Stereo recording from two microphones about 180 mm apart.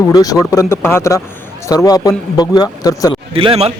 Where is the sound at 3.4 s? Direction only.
30° right (ahead or behind).